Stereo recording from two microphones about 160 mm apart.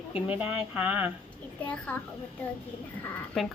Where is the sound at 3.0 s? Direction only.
5° left (ahead or behind).